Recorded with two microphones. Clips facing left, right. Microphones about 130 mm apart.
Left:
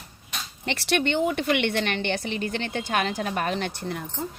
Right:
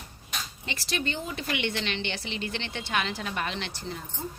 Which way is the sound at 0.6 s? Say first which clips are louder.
Left 8 dB; 65° left (ahead or behind).